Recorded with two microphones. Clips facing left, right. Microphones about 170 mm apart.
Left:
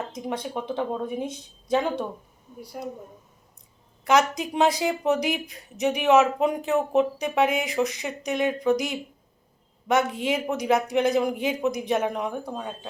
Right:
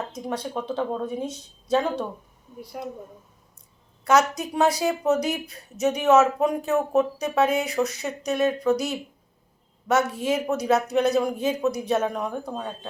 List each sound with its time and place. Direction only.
0.3 s speech: 15° left (ahead or behind)
4.0 s speech: 15° left (ahead or behind)